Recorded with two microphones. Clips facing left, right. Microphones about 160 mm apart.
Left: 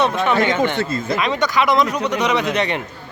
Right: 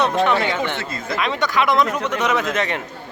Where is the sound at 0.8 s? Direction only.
25° left (ahead or behind).